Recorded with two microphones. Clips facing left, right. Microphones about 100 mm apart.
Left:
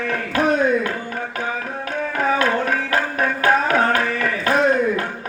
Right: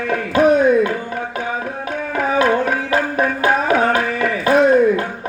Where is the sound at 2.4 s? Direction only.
20° right (ahead or behind).